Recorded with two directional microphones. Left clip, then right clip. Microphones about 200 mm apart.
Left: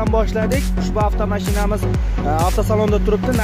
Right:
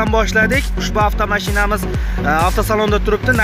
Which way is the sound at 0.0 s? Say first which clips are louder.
Right 5 dB; centre (ahead or behind).